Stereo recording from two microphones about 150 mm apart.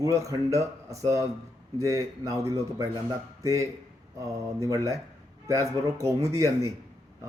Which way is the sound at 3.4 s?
20° right (ahead or behind).